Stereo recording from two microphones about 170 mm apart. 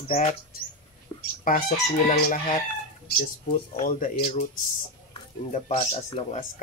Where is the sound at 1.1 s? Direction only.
25° left (ahead or behind).